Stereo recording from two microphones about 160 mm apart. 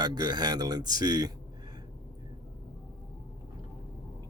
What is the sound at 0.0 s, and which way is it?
Speech, 25° right (ahead or behind).